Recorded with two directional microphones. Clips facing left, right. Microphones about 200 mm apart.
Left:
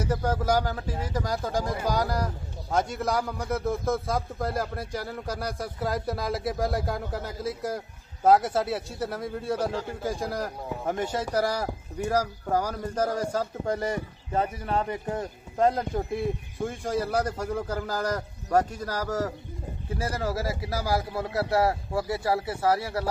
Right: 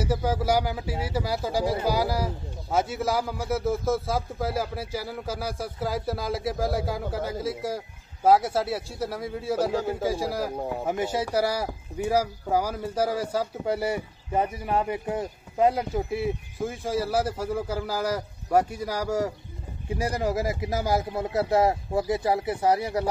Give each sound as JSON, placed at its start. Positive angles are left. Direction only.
{"t": 0.0, "sound": "a man's voice", "side_deg": -10}